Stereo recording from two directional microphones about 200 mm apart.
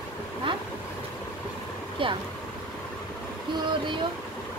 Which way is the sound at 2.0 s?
25° right (ahead or behind).